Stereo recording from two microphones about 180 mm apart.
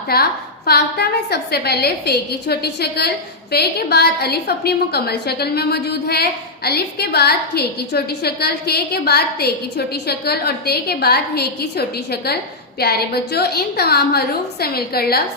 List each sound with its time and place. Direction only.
0.1 s a woman's voice: 60° left (ahead or behind)